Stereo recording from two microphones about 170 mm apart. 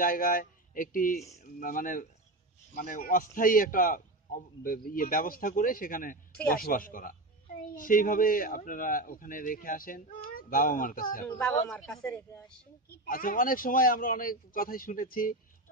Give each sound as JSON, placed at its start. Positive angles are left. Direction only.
{"t": 0.0, "sound": "a man's voice", "side_deg": 55}
{"t": 11.7, "sound": "speech", "side_deg": 5}
{"t": 12.9, "sound": "a man's voice", "side_deg": 60}